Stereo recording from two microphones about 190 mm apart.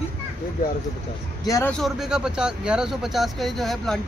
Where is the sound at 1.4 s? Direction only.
15° left (ahead or behind).